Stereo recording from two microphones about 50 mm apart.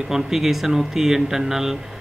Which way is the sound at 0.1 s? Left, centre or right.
Centre.